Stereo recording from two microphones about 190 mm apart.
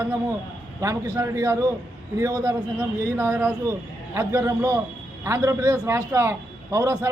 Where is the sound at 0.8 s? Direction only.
15° right (ahead or behind).